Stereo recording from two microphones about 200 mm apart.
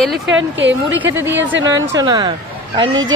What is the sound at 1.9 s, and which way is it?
Speech, 20° right (ahead or behind).